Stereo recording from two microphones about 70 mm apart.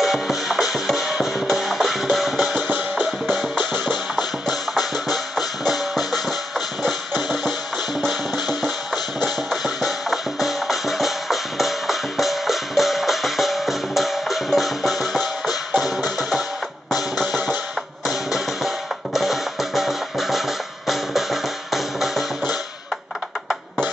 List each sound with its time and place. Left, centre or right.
0.0 s music: centre
2.5 s music: right
3.9 s music: centre
8.3 s music: left
8.9 s music: centre